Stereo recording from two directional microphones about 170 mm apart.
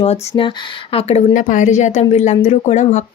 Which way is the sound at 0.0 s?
35° left (ahead or behind).